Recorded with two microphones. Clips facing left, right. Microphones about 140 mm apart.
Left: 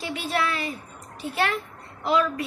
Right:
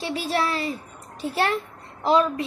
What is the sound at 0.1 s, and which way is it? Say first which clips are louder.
A woman's voice: right 2 dB; 35° right (ahead or behind).